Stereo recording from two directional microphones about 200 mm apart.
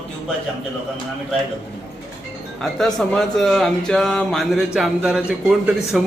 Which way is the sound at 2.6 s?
Centre (ahead or behind).